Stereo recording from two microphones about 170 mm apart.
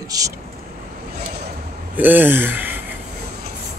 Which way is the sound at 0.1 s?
20° right (ahead or behind).